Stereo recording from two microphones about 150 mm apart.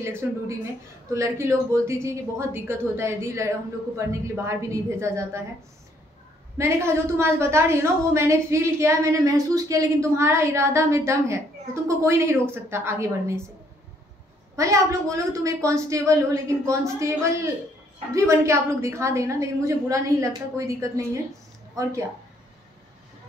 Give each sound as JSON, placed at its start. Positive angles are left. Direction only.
{"t": 0.0, "sound": "a woman's voice", "side_deg": -15}
{"t": 6.6, "sound": "a woman's voice", "side_deg": -15}
{"t": 14.5, "sound": "a woman's voice", "side_deg": -20}